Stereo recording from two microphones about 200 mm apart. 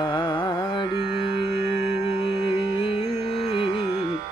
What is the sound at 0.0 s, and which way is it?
Carnatic music, 20° left (ahead or behind).